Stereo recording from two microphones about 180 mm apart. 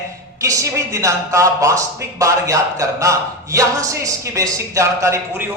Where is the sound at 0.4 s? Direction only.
15° right (ahead or behind).